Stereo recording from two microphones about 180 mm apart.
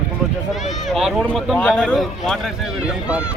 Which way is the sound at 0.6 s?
40° left (ahead or behind).